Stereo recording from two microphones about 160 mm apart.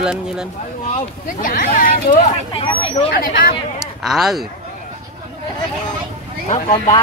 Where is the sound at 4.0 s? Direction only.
Centre (ahead or behind).